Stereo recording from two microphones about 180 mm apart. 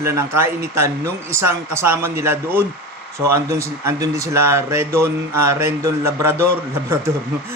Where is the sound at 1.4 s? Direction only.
15° right (ahead or behind).